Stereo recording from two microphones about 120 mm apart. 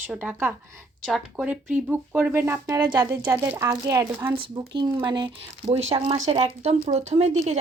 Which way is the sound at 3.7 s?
30° right (ahead or behind).